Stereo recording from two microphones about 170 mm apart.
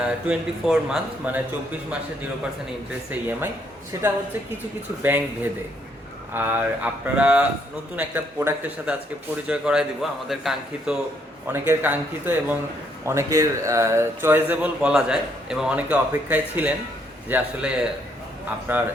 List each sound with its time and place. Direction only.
0.0 s a man's voice: 5° right (ahead or behind)
3.1 s a man's voice: 10° right (ahead or behind)
11.4 s a man's voice: 15° right (ahead or behind)
18.7 s a man's voice: 10° right (ahead or behind)